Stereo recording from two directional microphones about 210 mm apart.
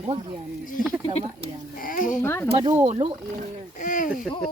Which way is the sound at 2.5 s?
20° right (ahead or behind).